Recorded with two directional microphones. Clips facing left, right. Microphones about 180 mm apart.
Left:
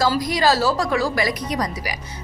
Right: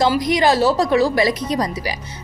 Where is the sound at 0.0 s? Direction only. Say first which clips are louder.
Right 3 dB; 20° right (ahead or behind).